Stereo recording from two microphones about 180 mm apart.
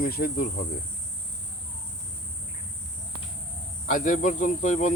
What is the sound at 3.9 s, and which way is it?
Speech, 45° left (ahead or behind).